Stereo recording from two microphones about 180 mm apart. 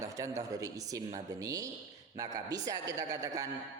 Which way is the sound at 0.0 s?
20° right (ahead or behind).